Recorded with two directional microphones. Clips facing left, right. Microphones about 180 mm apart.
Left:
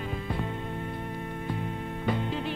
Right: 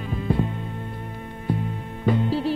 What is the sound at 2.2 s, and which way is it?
Music, 35° right (ahead or behind).